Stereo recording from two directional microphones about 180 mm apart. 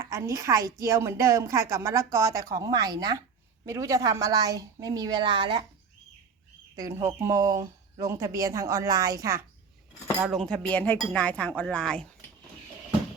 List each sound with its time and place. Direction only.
0.0 s a woman's voice: 15° right (ahead or behind)
6.7 s a woman's voice: 15° right (ahead or behind)
10.2 s speech: centre (ahead or behind)